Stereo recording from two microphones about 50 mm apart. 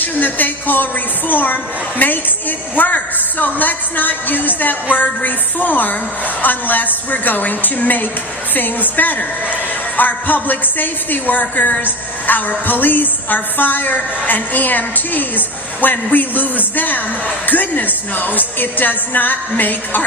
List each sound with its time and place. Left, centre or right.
0.0 s a woman's voice: left